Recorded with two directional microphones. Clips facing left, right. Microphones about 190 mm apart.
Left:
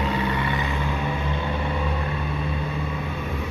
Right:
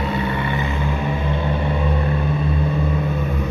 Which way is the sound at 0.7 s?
15° right (ahead or behind).